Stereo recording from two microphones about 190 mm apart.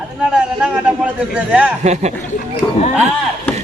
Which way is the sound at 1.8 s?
35° right (ahead or behind).